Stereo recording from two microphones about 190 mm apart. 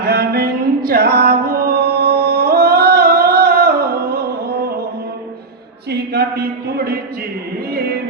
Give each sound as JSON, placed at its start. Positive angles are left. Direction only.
{"t": 0.0, "sound": "music", "side_deg": -55}
{"t": 5.9, "sound": "a sound", "side_deg": -60}
{"t": 7.7, "sound": "music", "side_deg": -55}